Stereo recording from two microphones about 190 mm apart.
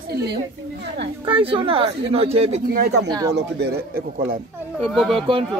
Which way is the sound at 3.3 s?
60° right (ahead or behind).